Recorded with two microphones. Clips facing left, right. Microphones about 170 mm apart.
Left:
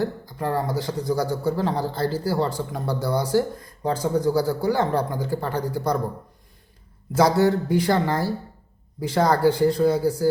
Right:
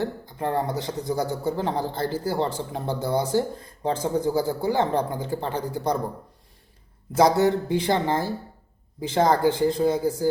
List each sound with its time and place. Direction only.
0.0 s a man's voice: 20° right (ahead or behind)
7.2 s a man's voice: 20° right (ahead or behind)